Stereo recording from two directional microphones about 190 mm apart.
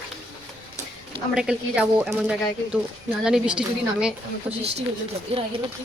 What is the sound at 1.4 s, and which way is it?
Speech, 5° right (ahead or behind).